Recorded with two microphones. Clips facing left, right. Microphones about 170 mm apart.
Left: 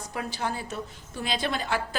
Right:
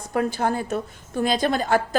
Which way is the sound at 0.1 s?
50° right (ahead or behind).